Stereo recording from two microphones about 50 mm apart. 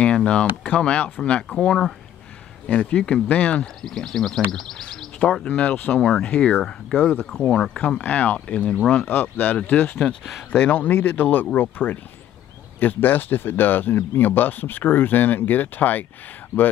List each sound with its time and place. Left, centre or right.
0.0 s speech: left
3.8 s speech: centre
5.2 s speech: left
6.6 s speech: centre
7.4 s speech: centre
8.0 s speech: left
9.0 s speech: left
16.5 s speech: left